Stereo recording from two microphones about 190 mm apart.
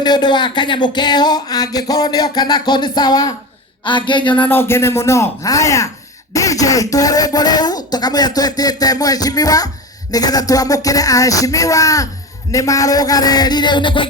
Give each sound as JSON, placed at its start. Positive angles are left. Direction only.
{"t": 0.0, "sound": "speech", "side_deg": 20}
{"t": 4.4, "sound": "music", "side_deg": 10}
{"t": 6.3, "sound": "speech", "side_deg": 15}
{"t": 10.1, "sound": "music", "side_deg": 20}
{"t": 12.5, "sound": "speech", "side_deg": 15}